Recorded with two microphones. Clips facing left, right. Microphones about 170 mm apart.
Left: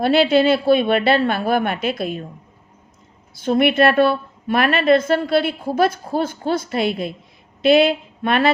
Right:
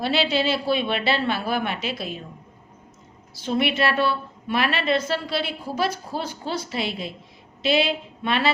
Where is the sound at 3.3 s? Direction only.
50° left (ahead or behind).